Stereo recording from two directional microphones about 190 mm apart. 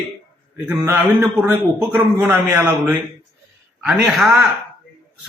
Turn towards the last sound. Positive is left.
turn(degrees=-5)  # may be behind; listen again after turning